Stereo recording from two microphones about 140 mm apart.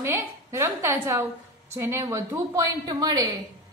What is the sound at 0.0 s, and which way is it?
A woman's voice, 20° right (ahead or behind).